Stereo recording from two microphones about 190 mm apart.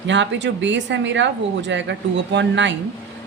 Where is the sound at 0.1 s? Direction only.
70° right (ahead or behind).